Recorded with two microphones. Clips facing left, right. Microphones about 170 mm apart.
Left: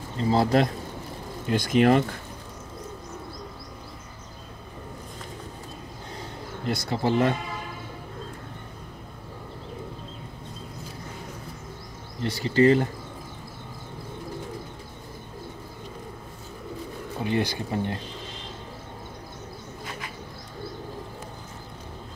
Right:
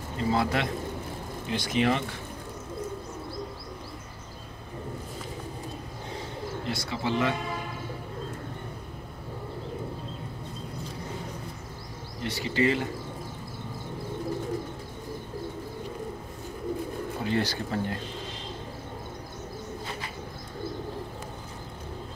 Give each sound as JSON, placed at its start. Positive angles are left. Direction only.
{"t": 0.2, "sound": "speech", "side_deg": 35}
{"t": 1.5, "sound": "speech", "side_deg": 50}
{"t": 6.7, "sound": "speech", "side_deg": 40}
{"t": 12.2, "sound": "speech", "side_deg": 35}
{"t": 17.2, "sound": "speech", "side_deg": 15}